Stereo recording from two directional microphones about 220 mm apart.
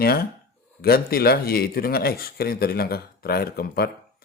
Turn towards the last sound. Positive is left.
turn(degrees=45)  # may be behind; listen again after turning